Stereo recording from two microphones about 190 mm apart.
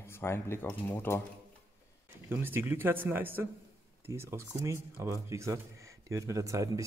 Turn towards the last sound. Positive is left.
turn(degrees=-15)  # may be behind; listen again after turning